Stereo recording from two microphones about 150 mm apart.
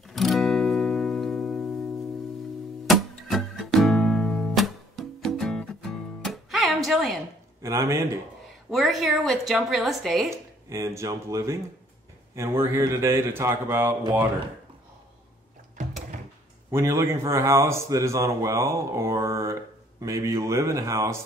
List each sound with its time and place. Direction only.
0.1 s music: centre (ahead or behind)
2.9 s music: centre (ahead or behind)
7.6 s speech: 20° right (ahead or behind)
8.6 s a woman's voice: centre (ahead or behind)
10.3 s a man's voice: 20° right (ahead or behind)
16.7 s speech: 20° right (ahead or behind)